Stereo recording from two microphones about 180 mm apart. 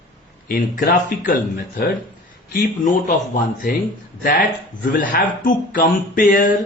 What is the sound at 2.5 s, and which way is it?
Speech, 45° left (ahead or behind).